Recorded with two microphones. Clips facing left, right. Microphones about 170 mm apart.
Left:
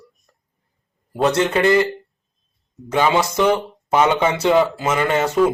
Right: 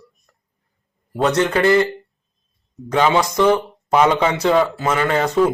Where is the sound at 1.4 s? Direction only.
20° left (ahead or behind).